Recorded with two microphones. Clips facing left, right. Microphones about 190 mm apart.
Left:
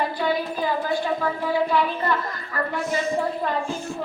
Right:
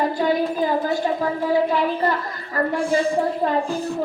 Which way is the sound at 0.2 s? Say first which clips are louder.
Right 4 dB; 45° right (ahead or behind).